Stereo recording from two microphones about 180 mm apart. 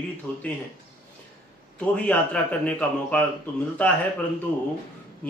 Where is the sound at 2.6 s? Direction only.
10° left (ahead or behind).